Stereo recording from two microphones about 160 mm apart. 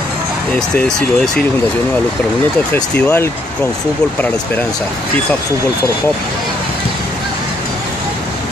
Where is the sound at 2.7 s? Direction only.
5° left (ahead or behind).